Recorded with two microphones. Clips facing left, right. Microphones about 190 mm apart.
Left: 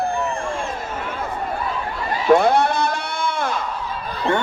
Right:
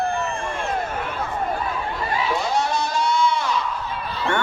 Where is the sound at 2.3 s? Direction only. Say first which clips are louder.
Left 11 dB; 60° left (ahead or behind).